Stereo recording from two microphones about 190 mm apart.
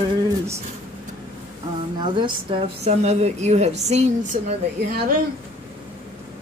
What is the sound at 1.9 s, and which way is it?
A woman's voice, 25° right (ahead or behind).